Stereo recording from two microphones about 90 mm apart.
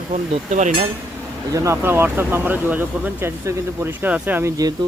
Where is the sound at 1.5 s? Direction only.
35° right (ahead or behind).